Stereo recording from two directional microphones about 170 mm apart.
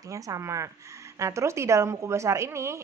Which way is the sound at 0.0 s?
20° right (ahead or behind).